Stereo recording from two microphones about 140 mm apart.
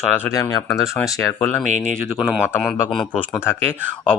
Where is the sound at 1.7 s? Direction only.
60° right (ahead or behind).